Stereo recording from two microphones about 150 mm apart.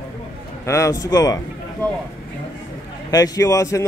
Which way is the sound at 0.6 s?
20° left (ahead or behind).